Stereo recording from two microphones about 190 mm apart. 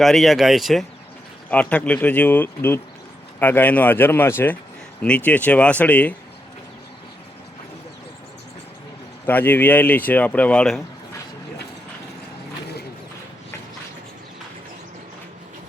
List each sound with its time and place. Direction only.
0.0 s speech: centre (ahead or behind)
9.2 s speech: 10° left (ahead or behind)